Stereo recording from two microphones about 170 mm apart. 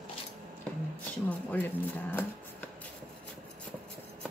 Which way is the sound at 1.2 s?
10° left (ahead or behind).